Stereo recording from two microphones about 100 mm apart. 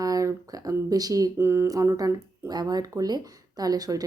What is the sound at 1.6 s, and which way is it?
Speech, 35° right (ahead or behind).